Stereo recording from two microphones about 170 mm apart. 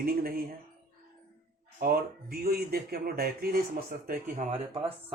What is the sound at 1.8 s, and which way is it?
Speech, 60° right (ahead or behind).